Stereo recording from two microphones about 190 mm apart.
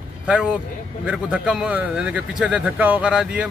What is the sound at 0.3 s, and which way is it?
A man's voice, 5° right (ahead or behind).